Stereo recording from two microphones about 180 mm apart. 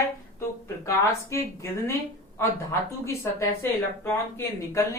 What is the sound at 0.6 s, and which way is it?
Speech, 15° left (ahead or behind).